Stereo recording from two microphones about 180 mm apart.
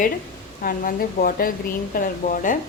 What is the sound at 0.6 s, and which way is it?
Speech, 50° left (ahead or behind).